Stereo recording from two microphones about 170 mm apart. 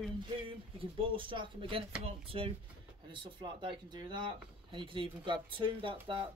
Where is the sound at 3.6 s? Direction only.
30° right (ahead or behind).